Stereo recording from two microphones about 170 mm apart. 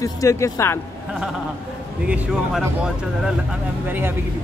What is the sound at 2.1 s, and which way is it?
Speech, 5° right (ahead or behind).